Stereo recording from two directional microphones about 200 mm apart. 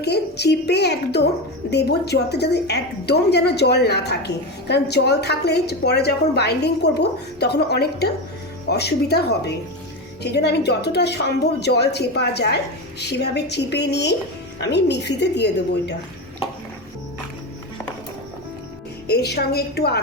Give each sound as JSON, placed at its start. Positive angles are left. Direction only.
{"t": 0.0, "sound": "a woman's voice", "side_deg": 55}
{"t": 19.0, "sound": "a woman's voice", "side_deg": 55}